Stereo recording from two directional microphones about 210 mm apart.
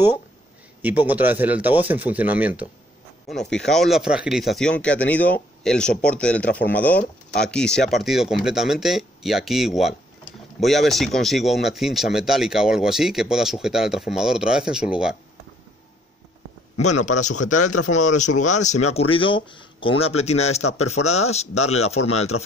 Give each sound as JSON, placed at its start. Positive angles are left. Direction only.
{"t": 0.8, "sound": "speech", "side_deg": -10}
{"t": 16.7, "sound": "speech", "side_deg": 90}
{"t": 17.9, "sound": "speech", "side_deg": 35}
{"t": 22.3, "sound": "speech", "side_deg": 90}